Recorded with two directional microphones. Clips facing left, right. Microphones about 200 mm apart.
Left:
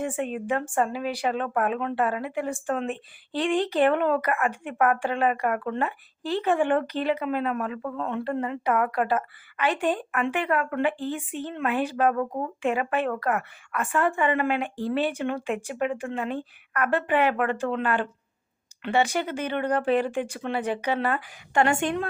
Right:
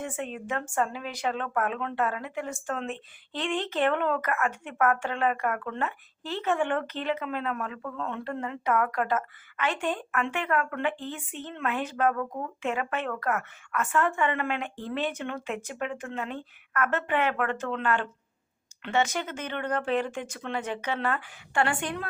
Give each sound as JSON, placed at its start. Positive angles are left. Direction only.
{"t": 0.2, "sound": "speech", "side_deg": 10}
{"t": 12.1, "sound": "speech", "side_deg": 30}
{"t": 12.6, "sound": "speech", "side_deg": 15}